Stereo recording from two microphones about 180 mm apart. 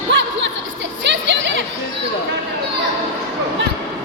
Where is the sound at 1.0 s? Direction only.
75° right (ahead or behind).